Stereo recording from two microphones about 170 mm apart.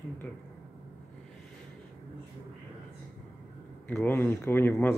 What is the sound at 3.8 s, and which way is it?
Speech, 10° left (ahead or behind).